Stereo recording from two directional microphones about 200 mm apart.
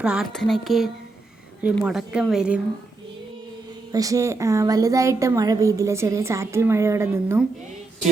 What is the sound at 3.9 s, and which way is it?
A woman's voice, 15° right (ahead or behind).